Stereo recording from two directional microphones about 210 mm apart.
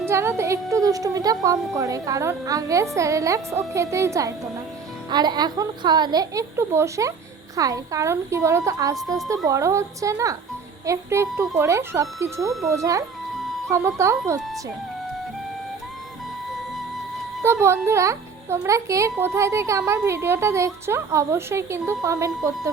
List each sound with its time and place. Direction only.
0.0 s a child's voice: 10° right (ahead or behind)
17.4 s a child's voice: 10° right (ahead or behind)